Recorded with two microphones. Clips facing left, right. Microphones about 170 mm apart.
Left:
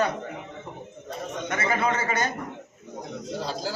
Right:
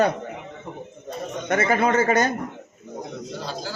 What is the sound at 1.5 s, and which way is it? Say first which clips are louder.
Speech: right 6 dB; 45° right (ahead or behind).